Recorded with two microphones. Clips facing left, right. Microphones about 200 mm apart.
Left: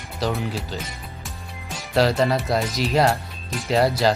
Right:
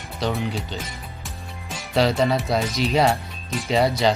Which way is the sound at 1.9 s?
Centre (ahead or behind).